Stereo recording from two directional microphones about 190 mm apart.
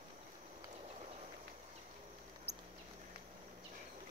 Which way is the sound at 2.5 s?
35° right (ahead or behind).